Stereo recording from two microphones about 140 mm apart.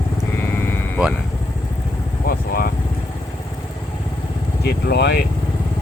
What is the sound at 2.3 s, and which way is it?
Vehicle, 90° left.